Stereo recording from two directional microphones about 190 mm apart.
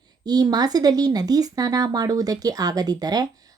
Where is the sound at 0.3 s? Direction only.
20° right (ahead or behind).